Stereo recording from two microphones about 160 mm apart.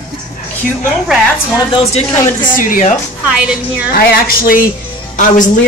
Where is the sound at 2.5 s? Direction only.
55° left (ahead or behind).